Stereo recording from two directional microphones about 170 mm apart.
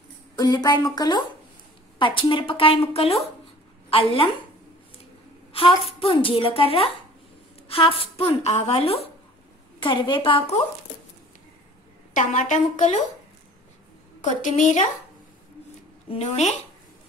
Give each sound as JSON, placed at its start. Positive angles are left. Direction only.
{"t": 0.4, "sound": "a woman's voice", "side_deg": 20}
{"t": 5.9, "sound": "a woman's voice", "side_deg": 35}
{"t": 12.1, "sound": "a woman's voice", "side_deg": 45}
{"t": 14.2, "sound": "a woman's voice", "side_deg": 45}
{"t": 16.1, "sound": "a woman's voice", "side_deg": 40}